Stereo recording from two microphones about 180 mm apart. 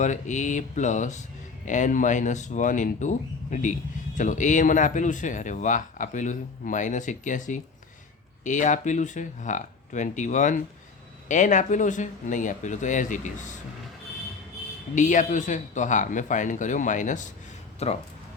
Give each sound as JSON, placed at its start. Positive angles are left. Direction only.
{"t": 0.0, "sound": "speech", "side_deg": 45}
{"t": 14.9, "sound": "speech", "side_deg": 45}